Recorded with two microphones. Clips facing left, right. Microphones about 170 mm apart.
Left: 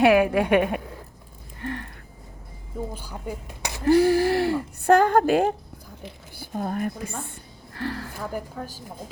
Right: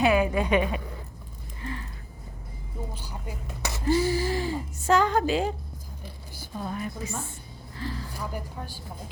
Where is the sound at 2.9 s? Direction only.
55° left (ahead or behind).